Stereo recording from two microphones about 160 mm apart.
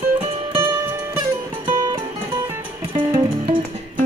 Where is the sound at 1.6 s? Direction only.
30° right (ahead or behind).